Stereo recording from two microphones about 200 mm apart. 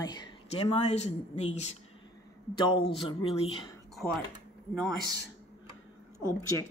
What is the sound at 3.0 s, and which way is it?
Speech, 25° left (ahead or behind).